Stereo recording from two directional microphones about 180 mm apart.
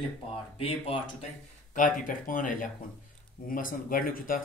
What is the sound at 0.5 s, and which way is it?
Speech, 30° left (ahead or behind).